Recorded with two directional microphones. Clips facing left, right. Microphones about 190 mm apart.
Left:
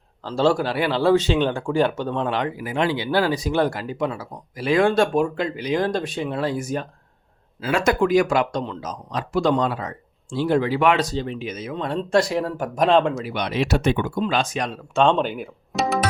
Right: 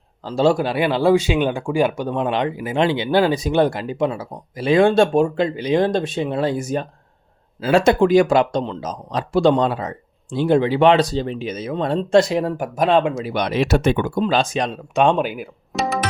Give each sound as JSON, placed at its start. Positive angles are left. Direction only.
{"t": 0.3, "sound": "speech", "side_deg": -15}
{"t": 12.3, "sound": "speech", "side_deg": -20}
{"t": 13.3, "sound": "speech", "side_deg": -45}